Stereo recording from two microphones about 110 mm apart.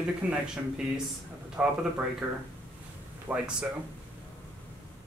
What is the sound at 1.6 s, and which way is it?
Speech, 10° right (ahead or behind).